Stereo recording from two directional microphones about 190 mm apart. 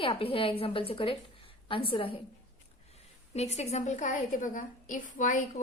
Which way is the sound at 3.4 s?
35° left (ahead or behind).